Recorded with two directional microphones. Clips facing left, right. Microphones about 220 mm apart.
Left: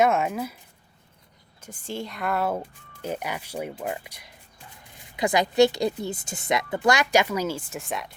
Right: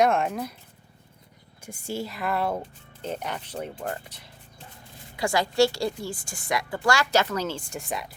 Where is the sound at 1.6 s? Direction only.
10° right (ahead or behind).